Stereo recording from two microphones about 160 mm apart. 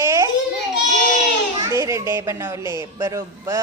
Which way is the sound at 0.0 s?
20° right (ahead or behind).